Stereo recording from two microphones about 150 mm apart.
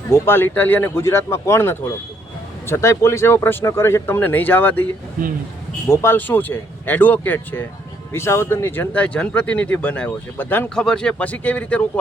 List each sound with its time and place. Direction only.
0.1 s speech: 15° left (ahead or behind)
5.9 s speech: 15° left (ahead or behind)